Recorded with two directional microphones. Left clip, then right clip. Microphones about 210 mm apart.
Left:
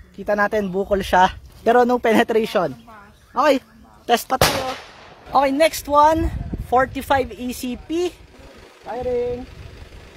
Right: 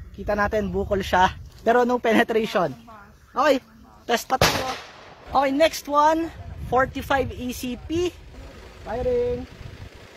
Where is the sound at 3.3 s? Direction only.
25° left (ahead or behind).